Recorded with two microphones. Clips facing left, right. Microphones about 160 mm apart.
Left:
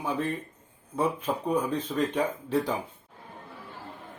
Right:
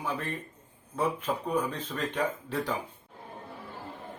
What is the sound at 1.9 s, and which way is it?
Speech, 15° left (ahead or behind).